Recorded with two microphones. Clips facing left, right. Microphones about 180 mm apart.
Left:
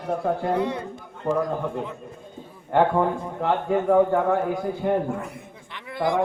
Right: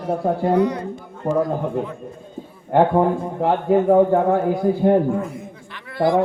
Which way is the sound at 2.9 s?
35° right (ahead or behind).